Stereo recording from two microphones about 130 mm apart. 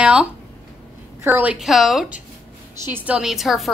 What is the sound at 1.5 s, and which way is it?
Speech, centre (ahead or behind).